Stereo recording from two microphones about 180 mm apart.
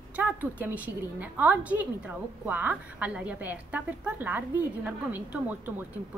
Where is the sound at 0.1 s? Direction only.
10° right (ahead or behind).